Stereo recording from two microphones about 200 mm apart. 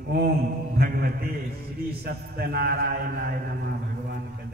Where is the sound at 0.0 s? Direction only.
50° right (ahead or behind).